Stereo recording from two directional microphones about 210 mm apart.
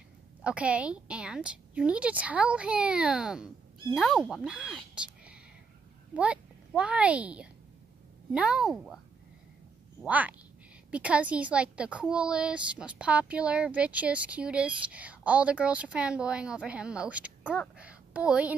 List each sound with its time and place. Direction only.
0.4 s a woman's voice: 5° right (ahead or behind)
10.0 s a woman's voice: 5° right (ahead or behind)